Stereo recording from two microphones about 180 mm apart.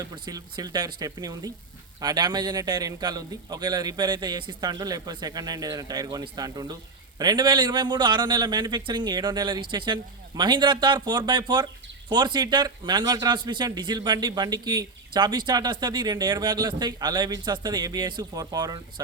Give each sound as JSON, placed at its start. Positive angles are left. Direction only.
{"t": 0.0, "sound": "a man's voice", "side_deg": -20}